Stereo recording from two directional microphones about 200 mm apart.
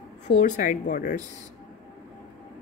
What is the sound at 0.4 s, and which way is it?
Speech, 40° left (ahead or behind).